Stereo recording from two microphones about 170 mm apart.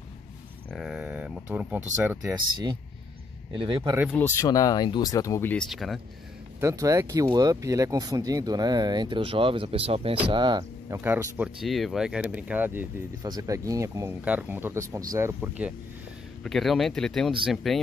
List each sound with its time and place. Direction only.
0.7 s speech: centre (ahead or behind)
3.5 s speech: 30° right (ahead or behind)
4.1 s speech: 15° left (ahead or behind); by 5.9 s centre (ahead or behind)
6.6 s speech: 20° right (ahead or behind)
11.0 s speech: 10° right (ahead or behind)
11.6 s speech: centre (ahead or behind)
13.2 s speech: 20° right (ahead or behind)
16.4 s speech: centre (ahead or behind)